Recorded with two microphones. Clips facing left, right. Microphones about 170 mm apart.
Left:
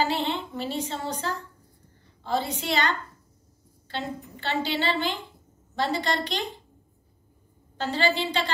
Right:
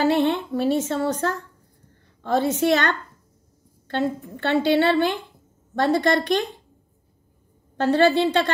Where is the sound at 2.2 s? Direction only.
60° right (ahead or behind).